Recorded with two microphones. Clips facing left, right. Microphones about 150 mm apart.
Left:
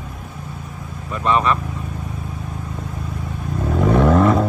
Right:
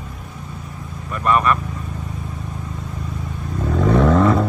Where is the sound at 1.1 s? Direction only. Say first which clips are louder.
Even; 25° left (ahead or behind).